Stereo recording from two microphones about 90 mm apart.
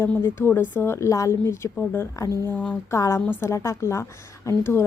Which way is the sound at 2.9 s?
30° left (ahead or behind).